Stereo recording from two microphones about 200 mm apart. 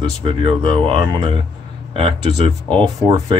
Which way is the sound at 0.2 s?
25° right (ahead or behind).